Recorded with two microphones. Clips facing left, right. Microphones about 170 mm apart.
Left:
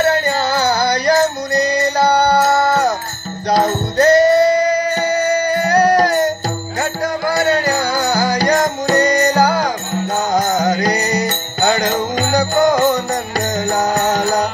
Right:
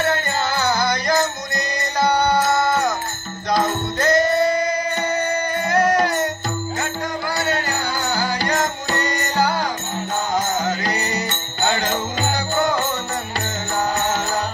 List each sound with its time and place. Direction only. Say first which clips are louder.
0.0 s music: left 6 dB; 30° left (ahead or behind)